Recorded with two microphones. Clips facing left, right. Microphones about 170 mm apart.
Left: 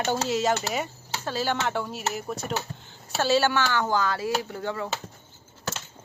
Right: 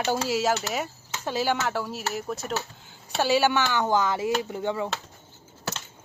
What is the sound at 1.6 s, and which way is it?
Speech, centre (ahead or behind).